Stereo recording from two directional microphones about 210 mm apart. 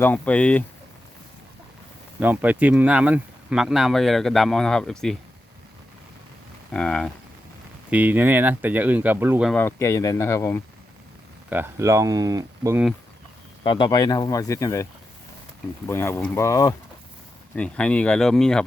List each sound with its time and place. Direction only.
0.0 s speech: 5° left (ahead or behind)
2.2 s speech: 5° right (ahead or behind)
6.7 s speech: 5° left (ahead or behind)
7.9 s speech: 5° right (ahead or behind)
9.5 s speech: 10° left (ahead or behind)
11.4 s speech: 10° right (ahead or behind)
13.7 s speech: 20° left (ahead or behind)
15.9 s speech: 10° left (ahead or behind)